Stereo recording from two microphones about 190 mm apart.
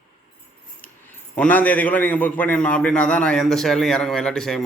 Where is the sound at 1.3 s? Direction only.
5° left (ahead or behind).